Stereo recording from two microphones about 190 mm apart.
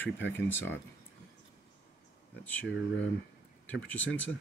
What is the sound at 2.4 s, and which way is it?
Speech, 5° left (ahead or behind).